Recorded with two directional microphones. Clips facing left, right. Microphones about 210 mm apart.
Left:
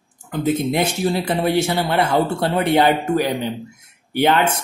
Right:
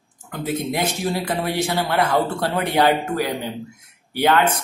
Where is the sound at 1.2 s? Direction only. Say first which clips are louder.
Left 4 dB; 25° left (ahead or behind).